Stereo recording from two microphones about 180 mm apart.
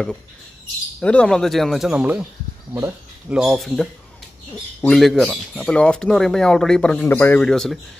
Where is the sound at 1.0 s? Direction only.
5° left (ahead or behind); by 3.3 s 15° right (ahead or behind).